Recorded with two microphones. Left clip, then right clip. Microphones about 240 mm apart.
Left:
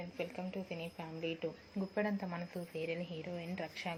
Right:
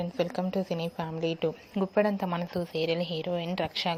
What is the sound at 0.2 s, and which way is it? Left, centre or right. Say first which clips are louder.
A woman's voice: right 12 dB; right.